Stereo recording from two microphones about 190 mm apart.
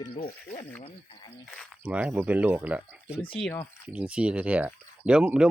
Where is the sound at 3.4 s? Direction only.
15° left (ahead or behind).